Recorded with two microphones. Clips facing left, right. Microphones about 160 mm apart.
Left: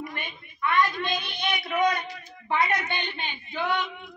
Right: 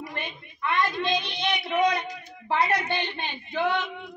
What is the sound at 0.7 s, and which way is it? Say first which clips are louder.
A woman's voice: even; 25° right (ahead or behind).